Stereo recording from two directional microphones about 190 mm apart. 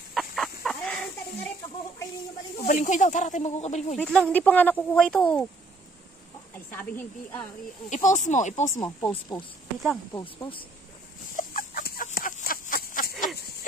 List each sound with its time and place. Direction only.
0.1 s chicken: centre (ahead or behind)
2.6 s speech: 45° left (ahead or behind)
3.9 s speech: 5° left (ahead or behind)
6.7 s speech: 10° left (ahead or behind)
7.9 s speech: 40° left (ahead or behind)
8.7 s speech: 15° left (ahead or behind)
11.3 s chicken: 45° left (ahead or behind)